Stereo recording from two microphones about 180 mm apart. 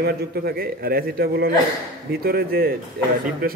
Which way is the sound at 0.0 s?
60° right (ahead or behind).